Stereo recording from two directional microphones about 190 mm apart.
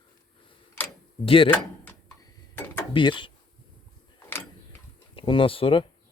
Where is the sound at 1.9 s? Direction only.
15° left (ahead or behind).